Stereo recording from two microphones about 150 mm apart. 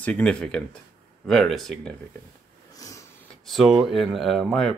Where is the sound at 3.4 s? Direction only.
Centre (ahead or behind).